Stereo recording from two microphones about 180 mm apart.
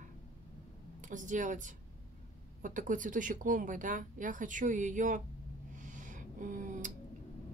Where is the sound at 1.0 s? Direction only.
45° right (ahead or behind).